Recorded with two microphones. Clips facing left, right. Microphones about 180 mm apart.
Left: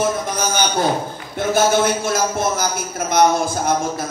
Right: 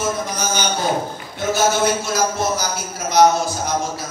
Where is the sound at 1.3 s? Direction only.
50° left (ahead or behind).